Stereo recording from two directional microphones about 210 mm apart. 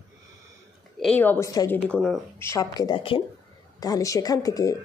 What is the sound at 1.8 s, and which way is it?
Speech, centre (ahead or behind).